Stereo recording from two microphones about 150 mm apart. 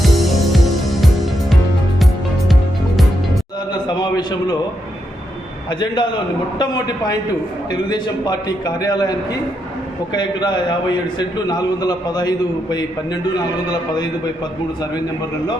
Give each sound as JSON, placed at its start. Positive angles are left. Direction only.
{"t": 0.0, "sound": "music", "side_deg": 0}
{"t": 3.7, "sound": "a sound", "side_deg": 30}
{"t": 5.8, "sound": "a man's voice", "side_deg": 30}